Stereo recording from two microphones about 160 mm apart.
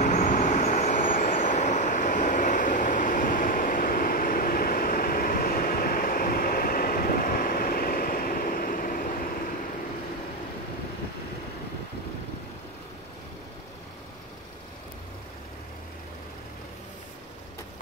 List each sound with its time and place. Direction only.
0.0 s vehicle: 50° left (ahead or behind)